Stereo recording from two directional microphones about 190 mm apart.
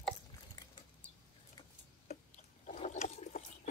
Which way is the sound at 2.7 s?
40° left (ahead or behind).